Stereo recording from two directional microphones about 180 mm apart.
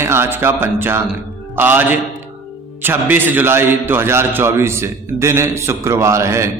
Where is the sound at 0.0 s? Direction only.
15° right (ahead or behind).